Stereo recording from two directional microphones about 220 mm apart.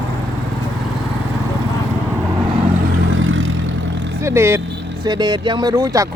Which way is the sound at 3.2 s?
65° right (ahead or behind).